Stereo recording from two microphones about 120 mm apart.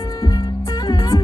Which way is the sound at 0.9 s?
30° left (ahead or behind).